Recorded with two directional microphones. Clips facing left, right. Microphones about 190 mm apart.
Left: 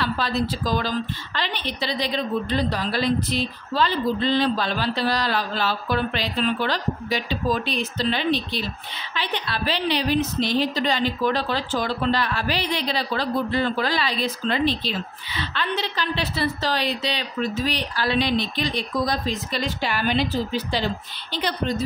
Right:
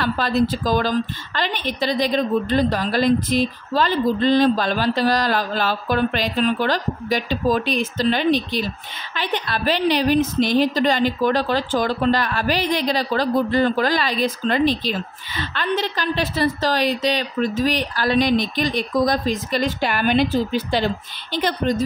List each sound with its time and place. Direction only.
0.0 s a woman's voice: 50° right (ahead or behind)